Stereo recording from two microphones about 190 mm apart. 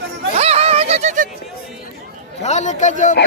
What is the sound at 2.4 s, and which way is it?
Speech, 40° left (ahead or behind).